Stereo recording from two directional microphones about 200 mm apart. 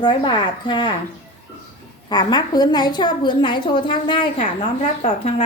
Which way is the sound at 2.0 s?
20° left (ahead or behind).